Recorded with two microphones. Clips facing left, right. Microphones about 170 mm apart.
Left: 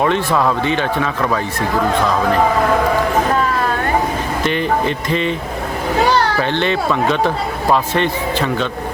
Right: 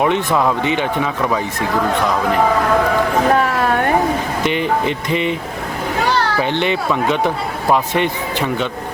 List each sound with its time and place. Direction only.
0.0 s speech: 15° right (ahead or behind)
4.4 s speech: 15° right (ahead or behind)
6.4 s speech: 15° right (ahead or behind)